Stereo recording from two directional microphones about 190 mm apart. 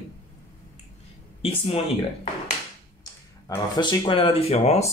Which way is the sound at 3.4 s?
20° left (ahead or behind).